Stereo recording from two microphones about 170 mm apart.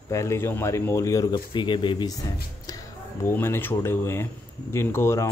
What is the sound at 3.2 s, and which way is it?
Speech, 15° left (ahead or behind).